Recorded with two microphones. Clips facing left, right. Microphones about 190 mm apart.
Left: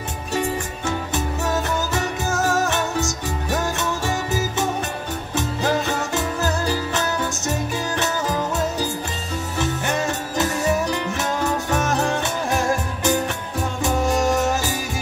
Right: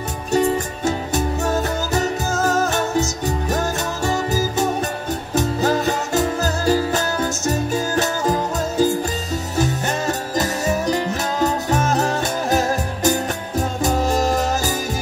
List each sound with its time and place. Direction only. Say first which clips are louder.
0.3 s music: right 6 dB; 40° right (ahead or behind)
9.6 s music: right 1 dB; 40° right (ahead or behind)